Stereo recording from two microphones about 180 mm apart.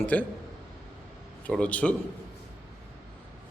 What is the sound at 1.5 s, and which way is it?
Speech, 5° left (ahead or behind).